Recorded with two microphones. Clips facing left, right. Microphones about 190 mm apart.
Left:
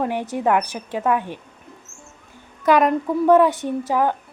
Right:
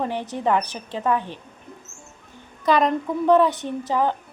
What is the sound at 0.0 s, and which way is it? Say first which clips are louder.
A woman's voice: left 3 dB; 10° left (ahead or behind).